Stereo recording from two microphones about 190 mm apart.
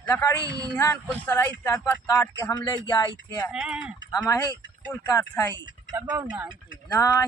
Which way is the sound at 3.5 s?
5° right (ahead or behind).